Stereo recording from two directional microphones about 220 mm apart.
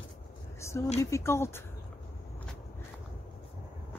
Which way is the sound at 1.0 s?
10° left (ahead or behind).